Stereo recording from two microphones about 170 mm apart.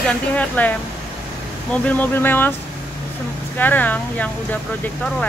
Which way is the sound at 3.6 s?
10° left (ahead or behind).